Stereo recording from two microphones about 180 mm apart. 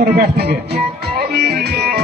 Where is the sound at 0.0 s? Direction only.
60° right (ahead or behind).